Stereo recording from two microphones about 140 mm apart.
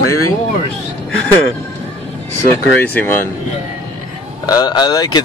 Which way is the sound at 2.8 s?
15° left (ahead or behind).